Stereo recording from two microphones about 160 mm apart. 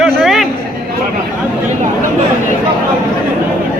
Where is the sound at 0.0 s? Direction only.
Centre (ahead or behind).